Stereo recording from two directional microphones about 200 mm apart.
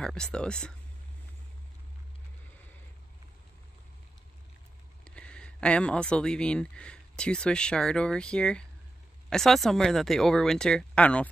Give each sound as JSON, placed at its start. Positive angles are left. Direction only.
{"t": 0.0, "sound": "speech", "side_deg": 5}
{"t": 5.0, "sound": "speech", "side_deg": 5}